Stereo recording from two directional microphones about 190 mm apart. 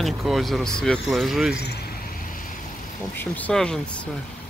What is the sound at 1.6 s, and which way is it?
Vehicle, 60° left (ahead or behind).